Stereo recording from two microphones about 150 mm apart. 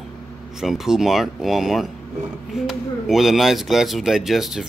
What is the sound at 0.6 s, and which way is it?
Speech, centre (ahead or behind).